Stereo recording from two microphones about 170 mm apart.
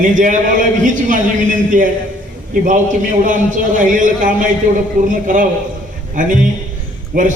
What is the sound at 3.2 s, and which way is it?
Speech, 50° right (ahead or behind).